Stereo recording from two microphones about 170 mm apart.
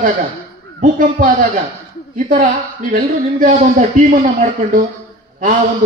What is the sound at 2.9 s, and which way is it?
Music, 50° right (ahead or behind).